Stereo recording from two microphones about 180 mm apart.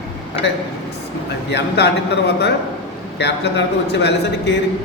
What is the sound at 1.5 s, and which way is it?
Speech, 70° left (ahead or behind).